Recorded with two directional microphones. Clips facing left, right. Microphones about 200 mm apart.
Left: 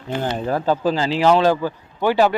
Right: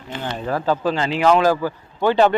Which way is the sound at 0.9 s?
30° left (ahead or behind).